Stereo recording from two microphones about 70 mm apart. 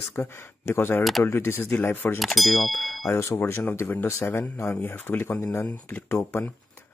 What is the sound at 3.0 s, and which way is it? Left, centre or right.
Speech, left.